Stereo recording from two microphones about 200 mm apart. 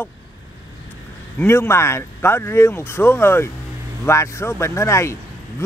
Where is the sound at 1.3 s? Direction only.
10° left (ahead or behind).